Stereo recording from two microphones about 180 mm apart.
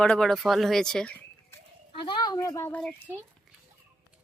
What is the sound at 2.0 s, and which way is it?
Speech, 25° left (ahead or behind).